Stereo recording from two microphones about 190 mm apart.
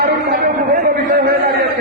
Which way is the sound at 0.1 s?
55° right (ahead or behind).